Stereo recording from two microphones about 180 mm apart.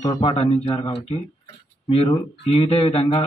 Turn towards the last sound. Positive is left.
turn(degrees=30)  # may be behind; listen again after turning